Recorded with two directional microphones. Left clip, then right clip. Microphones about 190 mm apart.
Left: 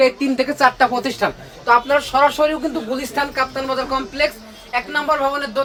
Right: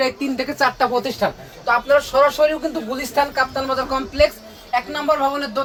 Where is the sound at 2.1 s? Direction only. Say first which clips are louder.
Left 2 dB; 20° left (ahead or behind).